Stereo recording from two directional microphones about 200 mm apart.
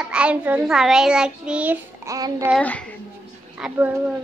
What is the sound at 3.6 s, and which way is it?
Speech, 10° right (ahead or behind).